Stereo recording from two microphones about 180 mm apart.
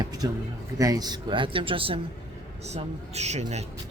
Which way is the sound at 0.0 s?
20° right (ahead or behind).